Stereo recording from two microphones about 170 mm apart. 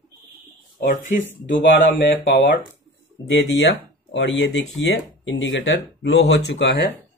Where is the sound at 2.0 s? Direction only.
90° left.